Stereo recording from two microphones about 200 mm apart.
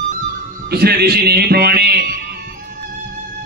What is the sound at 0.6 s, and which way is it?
A man's voice, 50° right (ahead or behind).